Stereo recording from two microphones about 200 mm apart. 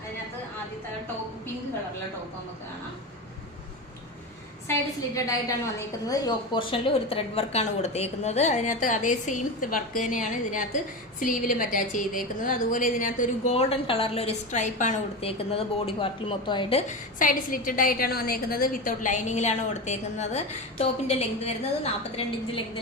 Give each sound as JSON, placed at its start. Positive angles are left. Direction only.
{"t": 5.1, "sound": "a woman's voice", "side_deg": 15}
{"t": 17.2, "sound": "a woman's voice", "side_deg": 45}